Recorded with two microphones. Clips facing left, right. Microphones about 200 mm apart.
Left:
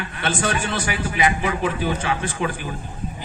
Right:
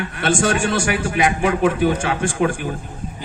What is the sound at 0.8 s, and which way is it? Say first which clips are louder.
A man's voice: right 3 dB; 65° right (ahead or behind).